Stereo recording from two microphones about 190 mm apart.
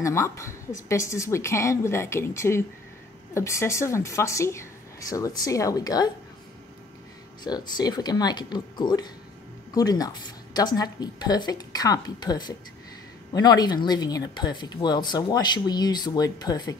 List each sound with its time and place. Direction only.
0.0 s a woman's voice: 15° left (ahead or behind)
7.4 s speech: 20° left (ahead or behind)